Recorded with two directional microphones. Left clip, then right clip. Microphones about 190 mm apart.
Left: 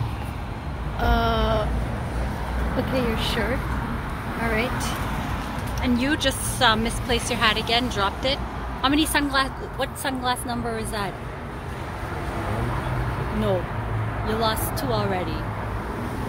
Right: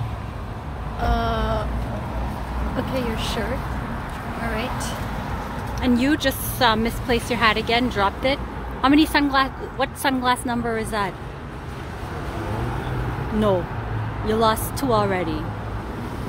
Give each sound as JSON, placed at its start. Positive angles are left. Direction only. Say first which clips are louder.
{"t": 1.0, "sound": "vehicle", "louder": "left 1 dB", "side_deg": 10}
{"t": 3.0, "sound": "speech", "louder": "left 2 dB", "side_deg": 5}
{"t": 5.8, "sound": "speech", "louder": "right 3 dB", "side_deg": -30}
{"t": 6.1, "sound": "a woman's voice", "louder": "right 1 dB", "side_deg": -20}
{"t": 14.2, "sound": "a woman's voice", "louder": "right 5 dB", "side_deg": -30}